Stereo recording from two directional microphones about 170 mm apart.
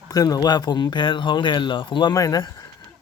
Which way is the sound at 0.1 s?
20° left (ahead or behind).